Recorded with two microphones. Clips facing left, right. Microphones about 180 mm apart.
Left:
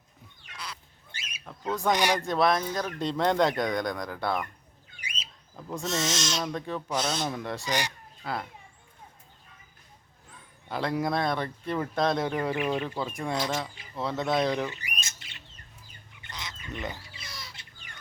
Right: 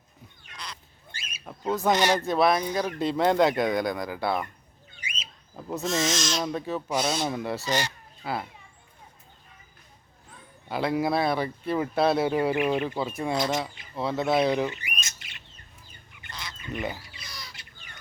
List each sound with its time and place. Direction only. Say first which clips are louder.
0.5 s duck: even; 5° left (ahead or behind)
1.1 s a sound: right 1 dB; 20° left (ahead or behind)
1.9 s speech: right 2 dB; 10° left (ahead or behind)
2.1 s speech: right 2 dB; 5° right (ahead or behind)
5.0 s bird: right 2 dB; 35° left (ahead or behind)
5.5 s speech: right 3 dB; 10° right (ahead or behind)
7.6 s speech: even; 15° left (ahead or behind)
8.2 s a child's voice: right 2 dB; 5° right (ahead or behind)
10.7 s speech: right 3 dB; 5° right (ahead or behind)
14.8 s squawk: right 2 dB; 35° left (ahead or behind)
16.2 s goose: even; 20° left (ahead or behind)
16.7 s speech: right 4 dB; 10° right (ahead or behind)
17.0 s a sound: even; 25° left (ahead or behind)